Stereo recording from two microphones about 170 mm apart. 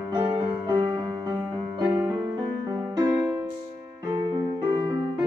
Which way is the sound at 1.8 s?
10° right (ahead or behind).